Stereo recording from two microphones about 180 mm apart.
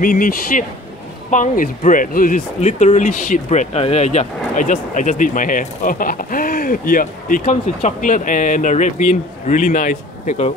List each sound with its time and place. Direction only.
0.0 s speech: 50° left (ahead or behind)